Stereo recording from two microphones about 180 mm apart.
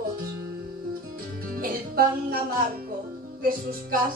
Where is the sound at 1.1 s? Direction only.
55° right (ahead or behind).